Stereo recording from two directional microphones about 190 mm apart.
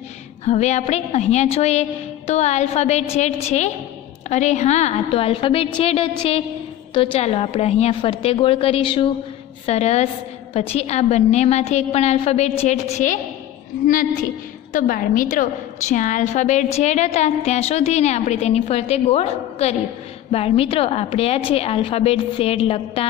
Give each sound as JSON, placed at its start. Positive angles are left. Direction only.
{"t": 0.5, "sound": "a woman's voice", "side_deg": 35}
{"t": 14.7, "sound": "a woman's voice", "side_deg": 45}